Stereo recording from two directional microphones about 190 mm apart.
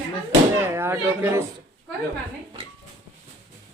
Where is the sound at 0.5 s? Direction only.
15° right (ahead or behind).